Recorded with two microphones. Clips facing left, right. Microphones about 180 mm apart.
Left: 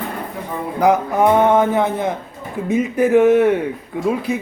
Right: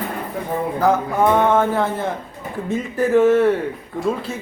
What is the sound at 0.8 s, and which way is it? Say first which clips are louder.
A man's voice: left 3 dB; 15° left (ahead or behind).